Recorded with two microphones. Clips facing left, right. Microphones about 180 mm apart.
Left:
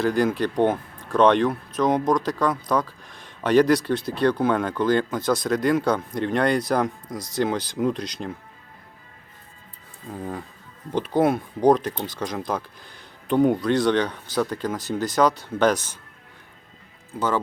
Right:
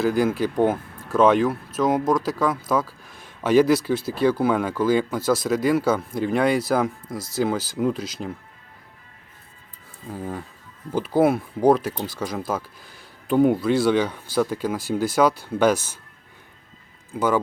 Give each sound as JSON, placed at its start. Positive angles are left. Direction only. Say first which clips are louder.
{"t": 0.0, "sound": "speech", "louder": "right 1 dB", "side_deg": -5}
{"t": 10.1, "sound": "speech", "louder": "right 1 dB", "side_deg": -5}
{"t": 17.2, "sound": "speech", "louder": "right 3 dB", "side_deg": -10}